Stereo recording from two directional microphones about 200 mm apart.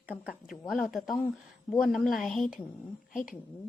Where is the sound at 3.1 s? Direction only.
40° left (ahead or behind).